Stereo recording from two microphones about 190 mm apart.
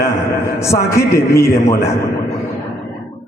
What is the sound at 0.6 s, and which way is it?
A man's voice, 15° left (ahead or behind).